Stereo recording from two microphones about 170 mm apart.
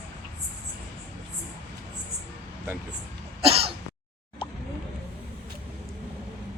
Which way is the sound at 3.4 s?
35° right (ahead or behind).